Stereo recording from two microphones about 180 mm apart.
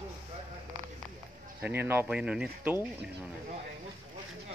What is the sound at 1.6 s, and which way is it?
Speech, 10° right (ahead or behind).